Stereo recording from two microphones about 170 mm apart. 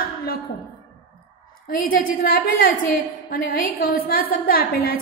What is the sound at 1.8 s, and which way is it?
A woman's voice, 55° left (ahead or behind).